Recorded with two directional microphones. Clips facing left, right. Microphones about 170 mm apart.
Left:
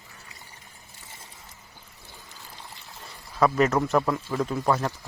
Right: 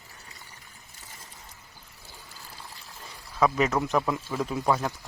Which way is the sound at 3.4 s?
Centre (ahead or behind).